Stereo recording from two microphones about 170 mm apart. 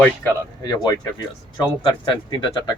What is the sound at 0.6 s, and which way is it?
Speech, 25° left (ahead or behind).